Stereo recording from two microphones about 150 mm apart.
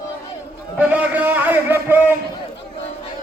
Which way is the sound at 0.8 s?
10° right (ahead or behind).